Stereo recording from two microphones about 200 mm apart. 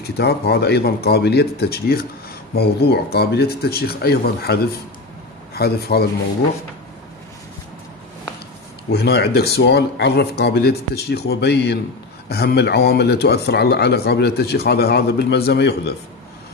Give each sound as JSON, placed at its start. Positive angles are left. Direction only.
{"t": 0.2, "sound": "a man's voice", "side_deg": 55}
{"t": 8.9, "sound": "speech", "side_deg": 55}